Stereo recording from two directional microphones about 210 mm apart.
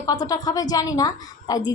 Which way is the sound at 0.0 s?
15° left (ahead or behind).